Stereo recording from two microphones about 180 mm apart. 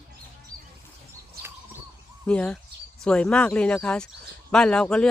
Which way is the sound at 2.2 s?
5° left (ahead or behind).